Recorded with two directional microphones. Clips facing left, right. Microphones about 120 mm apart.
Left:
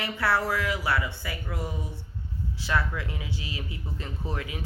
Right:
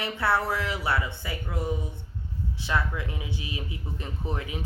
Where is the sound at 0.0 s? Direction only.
25° right (ahead or behind).